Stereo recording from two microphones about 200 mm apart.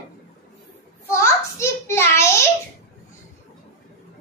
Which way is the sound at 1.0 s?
15° left (ahead or behind).